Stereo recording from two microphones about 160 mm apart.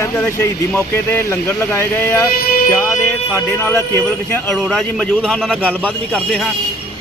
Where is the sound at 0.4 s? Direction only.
15° left (ahead or behind).